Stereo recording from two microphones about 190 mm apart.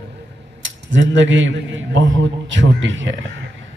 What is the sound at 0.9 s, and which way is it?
A man's voice, 75° right (ahead or behind).